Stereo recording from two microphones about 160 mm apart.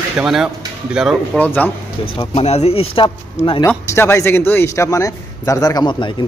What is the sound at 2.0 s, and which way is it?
Speech, 30° left (ahead or behind).